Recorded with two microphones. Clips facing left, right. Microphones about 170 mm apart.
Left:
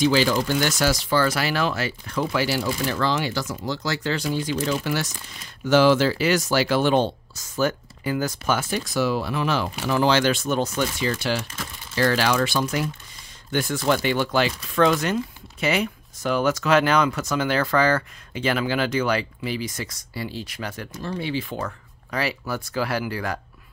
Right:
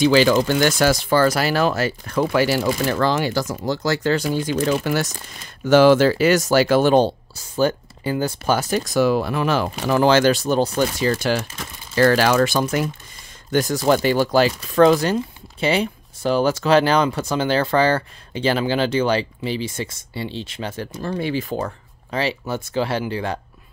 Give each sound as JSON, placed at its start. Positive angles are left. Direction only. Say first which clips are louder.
{"t": 0.0, "sound": "speech", "louder": "right 5 dB", "side_deg": -75}
{"t": 0.6, "sound": "speech", "louder": "right 5 dB", "side_deg": -55}
{"t": 21.0, "sound": "speech", "louder": "right 4 dB", "side_deg": -50}
{"t": 21.5, "sound": "speech", "louder": "right 4 dB", "side_deg": -30}